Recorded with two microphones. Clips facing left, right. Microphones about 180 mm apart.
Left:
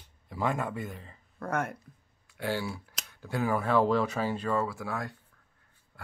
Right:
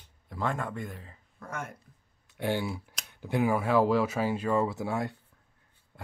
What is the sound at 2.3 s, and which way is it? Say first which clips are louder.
Speech: right 2 dB; 20° right (ahead or behind).